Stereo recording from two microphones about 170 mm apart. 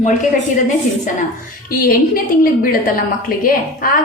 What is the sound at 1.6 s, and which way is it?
A woman's voice, 60° left (ahead or behind).